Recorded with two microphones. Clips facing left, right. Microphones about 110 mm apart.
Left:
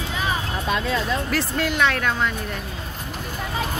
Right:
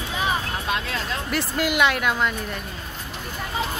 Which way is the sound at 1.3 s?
5° right (ahead or behind).